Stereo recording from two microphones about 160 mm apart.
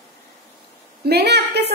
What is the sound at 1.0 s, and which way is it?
Speech, 90° right.